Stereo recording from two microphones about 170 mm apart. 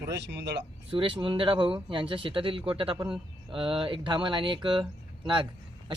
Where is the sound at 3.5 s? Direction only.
30° right (ahead or behind).